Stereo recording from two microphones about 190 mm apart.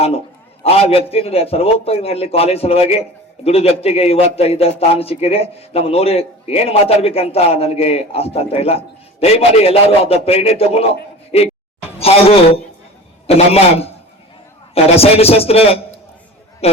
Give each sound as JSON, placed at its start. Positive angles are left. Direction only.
{"t": 0.6, "sound": "a man's voice", "side_deg": 30}
{"t": 11.9, "sound": "a sound", "side_deg": 30}
{"t": 13.2, "sound": "a man's voice", "side_deg": 30}
{"t": 14.9, "sound": "a man's voice", "side_deg": 30}